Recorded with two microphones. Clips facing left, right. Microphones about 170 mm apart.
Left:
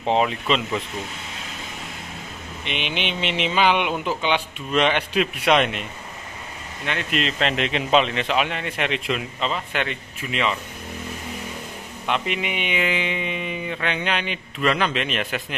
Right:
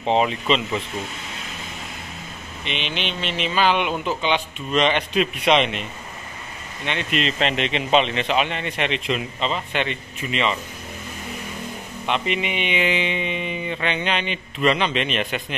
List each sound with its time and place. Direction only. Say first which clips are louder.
0.2 s speech: right 1 dB; centre (ahead or behind)
2.6 s speech: even; 55° left (ahead or behind)
3.4 s speech: even; 15° left (ahead or behind)
6.9 s speech: right 1 dB; centre (ahead or behind)
12.1 s speech: right 1 dB; 5° left (ahead or behind)